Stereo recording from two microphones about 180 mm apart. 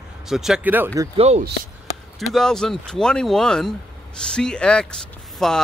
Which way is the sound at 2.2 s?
Centre (ahead or behind).